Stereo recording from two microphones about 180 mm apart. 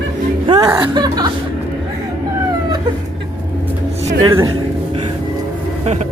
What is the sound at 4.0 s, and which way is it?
Music, 35° right (ahead or behind).